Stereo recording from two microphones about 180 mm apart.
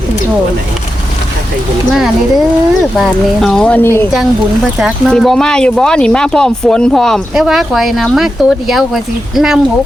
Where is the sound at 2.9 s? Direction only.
Centre (ahead or behind).